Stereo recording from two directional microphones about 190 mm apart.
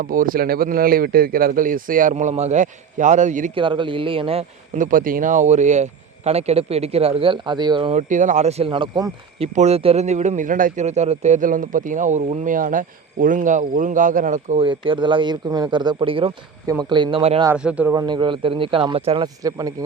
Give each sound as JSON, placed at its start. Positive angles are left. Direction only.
{"t": 0.0, "sound": "a man's voice", "side_deg": -45}
{"t": 3.5, "sound": "speech", "side_deg": -25}
{"t": 4.8, "sound": "a man's voice", "side_deg": -45}
{"t": 8.1, "sound": "a man's voice", "side_deg": -40}
{"t": 9.4, "sound": "a man's voice", "side_deg": -35}
{"t": 14.6, "sound": "speech", "side_deg": -25}
{"t": 17.5, "sound": "speech", "side_deg": -5}
{"t": 17.9, "sound": "speech", "side_deg": -20}